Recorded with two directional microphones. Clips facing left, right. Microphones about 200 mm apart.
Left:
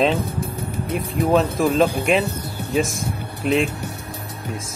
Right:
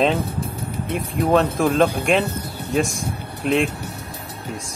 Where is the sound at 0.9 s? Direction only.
Centre (ahead or behind).